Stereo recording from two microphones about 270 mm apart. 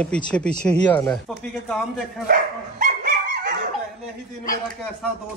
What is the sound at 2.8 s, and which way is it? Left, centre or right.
Dog, right.